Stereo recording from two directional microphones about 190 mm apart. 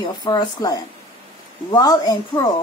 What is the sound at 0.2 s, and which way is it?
A woman's voice, 20° left (ahead or behind).